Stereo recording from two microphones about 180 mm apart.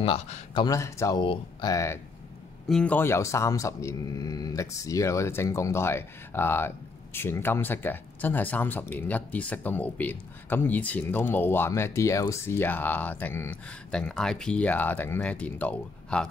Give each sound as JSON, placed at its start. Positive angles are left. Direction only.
{"t": 0.0, "sound": "speech", "side_deg": 30}
{"t": 0.7, "sound": "speech", "side_deg": 15}
{"t": 2.7, "sound": "speech", "side_deg": 5}